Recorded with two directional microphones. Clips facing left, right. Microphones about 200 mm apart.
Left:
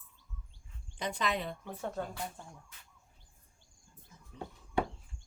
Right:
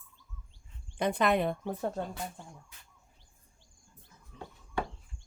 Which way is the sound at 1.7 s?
35° right (ahead or behind).